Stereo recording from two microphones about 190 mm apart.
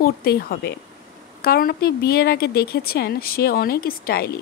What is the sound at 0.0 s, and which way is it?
A woman's voice, 55° left (ahead or behind).